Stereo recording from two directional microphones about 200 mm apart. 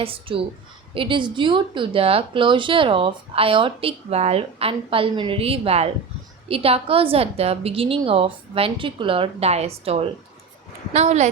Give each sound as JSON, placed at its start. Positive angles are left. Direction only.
{"t": 0.0, "sound": "speech", "side_deg": -25}